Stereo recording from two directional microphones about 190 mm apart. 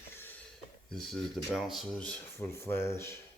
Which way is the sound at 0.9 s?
Centre (ahead or behind).